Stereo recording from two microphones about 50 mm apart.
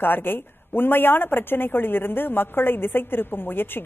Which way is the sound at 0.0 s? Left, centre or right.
Left.